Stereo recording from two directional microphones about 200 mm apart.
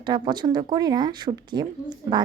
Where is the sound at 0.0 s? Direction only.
20° right (ahead or behind).